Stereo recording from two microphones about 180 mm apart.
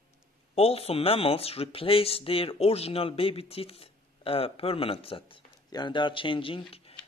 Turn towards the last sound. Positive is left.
turn(degrees=35)  # may be behind; listen again after turning